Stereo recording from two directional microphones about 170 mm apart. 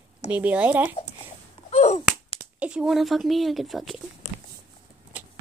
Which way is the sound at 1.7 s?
40° left (ahead or behind).